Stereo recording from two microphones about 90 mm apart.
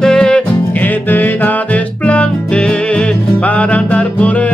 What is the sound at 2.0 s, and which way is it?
Music, 15° left (ahead or behind).